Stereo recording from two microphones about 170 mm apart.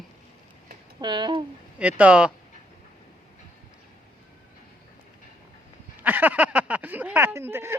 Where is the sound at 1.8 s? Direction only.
5° right (ahead or behind).